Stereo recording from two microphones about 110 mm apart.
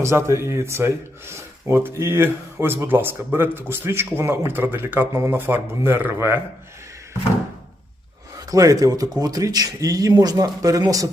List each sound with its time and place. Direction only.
0.0 s speech: 25° right (ahead or behind)
8.4 s speech: 30° right (ahead or behind)